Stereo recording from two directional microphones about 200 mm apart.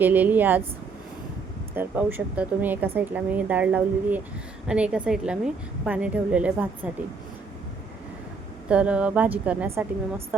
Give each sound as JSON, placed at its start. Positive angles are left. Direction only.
{"t": 0.0, "sound": "a woman's voice", "side_deg": -10}
{"t": 1.7, "sound": "a woman's voice", "side_deg": -10}
{"t": 8.7, "sound": "a woman's voice", "side_deg": -5}